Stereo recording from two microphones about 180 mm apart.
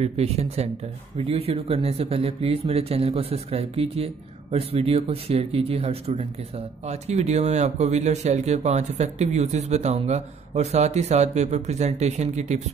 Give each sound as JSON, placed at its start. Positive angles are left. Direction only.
{"t": 0.0, "sound": "speech", "side_deg": -35}